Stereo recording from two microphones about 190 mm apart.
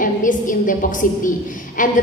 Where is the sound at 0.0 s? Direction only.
45° left (ahead or behind).